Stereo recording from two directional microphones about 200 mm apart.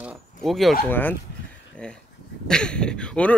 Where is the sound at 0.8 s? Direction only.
10° left (ahead or behind).